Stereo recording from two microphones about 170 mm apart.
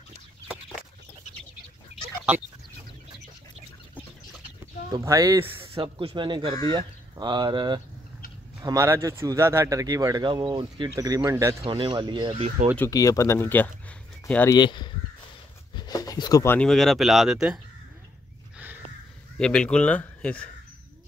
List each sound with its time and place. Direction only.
4.9 s speech: 20° right (ahead or behind)
5.8 s speech: 30° right (ahead or behind)
11.6 s speech: 30° right (ahead or behind)
12.9 s speech: 20° left (ahead or behind)
14.6 s speech: 25° left (ahead or behind)
15.7 s a sound: 25° left (ahead or behind)
16.5 s speech: centre (ahead or behind)
19.3 s speech: 5° left (ahead or behind)